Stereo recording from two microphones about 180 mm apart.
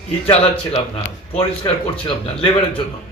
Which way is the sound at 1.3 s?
25° left (ahead or behind).